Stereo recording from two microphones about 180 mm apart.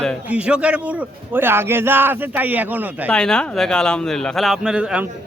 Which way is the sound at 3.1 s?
5° left (ahead or behind).